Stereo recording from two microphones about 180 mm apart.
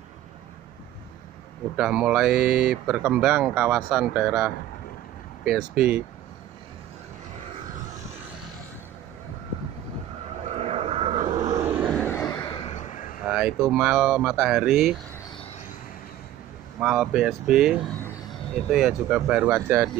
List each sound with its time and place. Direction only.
1.8 s speech: 5° right (ahead or behind)
10.5 s vehicle: 35° right (ahead or behind); by 11.9 s 10° right (ahead or behind)
12.1 s a sound: 15° left (ahead or behind)
12.4 s a sound: 30° left (ahead or behind)
13.3 s speech: 5° right (ahead or behind)
16.8 s speech: 5° right (ahead or behind)